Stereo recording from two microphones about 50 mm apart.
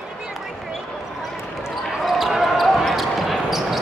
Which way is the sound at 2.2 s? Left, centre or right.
Centre.